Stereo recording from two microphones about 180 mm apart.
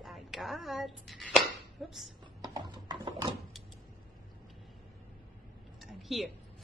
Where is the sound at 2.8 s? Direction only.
25° right (ahead or behind).